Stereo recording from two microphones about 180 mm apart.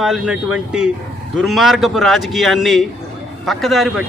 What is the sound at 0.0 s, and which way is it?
Speech, 5° right (ahead or behind).